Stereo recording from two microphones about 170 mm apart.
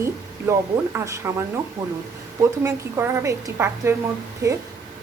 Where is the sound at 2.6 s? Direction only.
15° right (ahead or behind).